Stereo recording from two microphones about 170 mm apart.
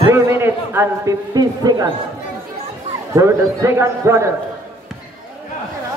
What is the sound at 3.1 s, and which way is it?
A man's voice, 15° right (ahead or behind).